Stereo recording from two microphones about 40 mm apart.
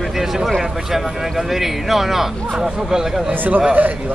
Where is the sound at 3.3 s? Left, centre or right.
Right.